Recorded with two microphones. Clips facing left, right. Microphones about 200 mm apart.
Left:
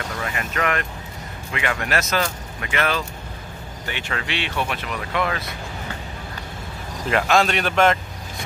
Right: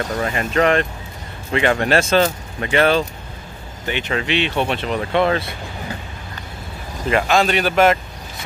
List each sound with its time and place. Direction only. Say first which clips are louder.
0.1 s speech: right 7 dB; 30° right (ahead or behind)
7.1 s speech: right 2 dB; centre (ahead or behind)